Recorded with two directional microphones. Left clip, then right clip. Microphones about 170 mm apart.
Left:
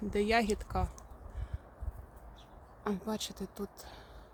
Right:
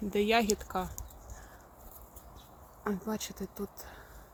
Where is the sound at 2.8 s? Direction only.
15° right (ahead or behind).